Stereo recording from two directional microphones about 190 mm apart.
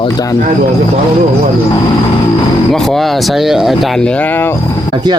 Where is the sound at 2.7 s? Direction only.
Centre (ahead or behind).